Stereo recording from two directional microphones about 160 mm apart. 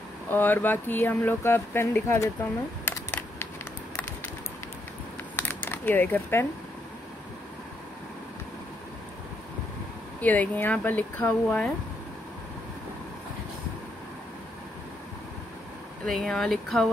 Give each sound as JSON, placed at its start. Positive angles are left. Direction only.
{"t": 0.3, "sound": "speech", "side_deg": 10}
{"t": 2.8, "sound": "computer keyboard", "side_deg": 10}
{"t": 5.3, "sound": "crumpling", "side_deg": 15}
{"t": 10.2, "sound": "speech", "side_deg": 10}
{"t": 16.1, "sound": "speech", "side_deg": 0}